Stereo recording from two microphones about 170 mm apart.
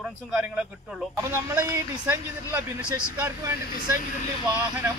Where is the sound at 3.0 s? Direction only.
15° right (ahead or behind).